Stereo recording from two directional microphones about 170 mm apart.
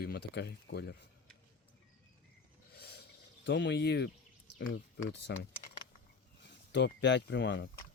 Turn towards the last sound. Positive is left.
turn(degrees=90)